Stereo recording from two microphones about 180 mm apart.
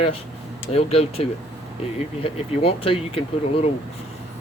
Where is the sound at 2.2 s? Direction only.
30° left (ahead or behind).